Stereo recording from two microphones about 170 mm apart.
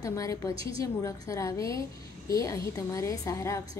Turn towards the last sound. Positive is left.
turn(degrees=15)  # may be behind; listen again after turning